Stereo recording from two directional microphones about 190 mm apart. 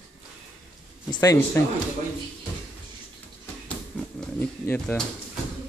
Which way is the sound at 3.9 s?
5° left (ahead or behind).